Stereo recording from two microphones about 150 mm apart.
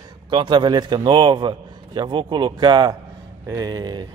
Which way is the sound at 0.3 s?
30° right (ahead or behind).